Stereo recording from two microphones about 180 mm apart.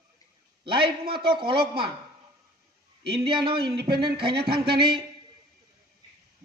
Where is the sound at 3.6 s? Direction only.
60° right (ahead or behind).